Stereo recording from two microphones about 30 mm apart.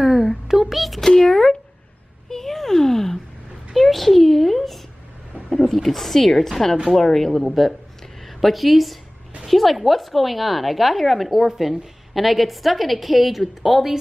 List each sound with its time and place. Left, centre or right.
0.0 s a sound: centre
0.5 s a child's voice: centre
0.8 s a woman's voice: centre
1.1 s speech: left
2.2 s a sound: centre
3.7 s a child's voice: centre
7.3 s a woman's voice: centre